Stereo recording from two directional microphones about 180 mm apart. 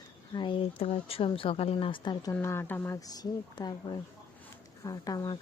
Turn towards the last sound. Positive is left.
turn(degrees=20)  # may be behind; listen again after turning